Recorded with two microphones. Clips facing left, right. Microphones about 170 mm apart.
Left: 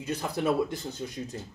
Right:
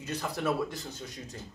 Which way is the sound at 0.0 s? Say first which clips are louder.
Left 3 dB; 20° left (ahead or behind).